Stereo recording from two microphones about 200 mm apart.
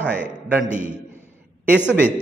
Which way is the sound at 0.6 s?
40° right (ahead or behind).